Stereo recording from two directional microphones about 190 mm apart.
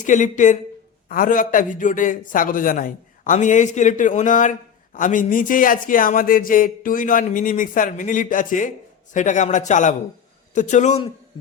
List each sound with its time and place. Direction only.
0.0 s a man's voice: 40° left (ahead or behind)